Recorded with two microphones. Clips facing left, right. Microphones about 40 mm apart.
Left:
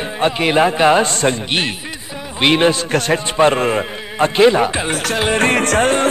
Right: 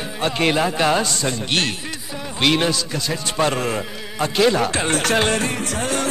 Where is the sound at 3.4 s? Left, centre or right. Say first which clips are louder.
Left 6 dB; left.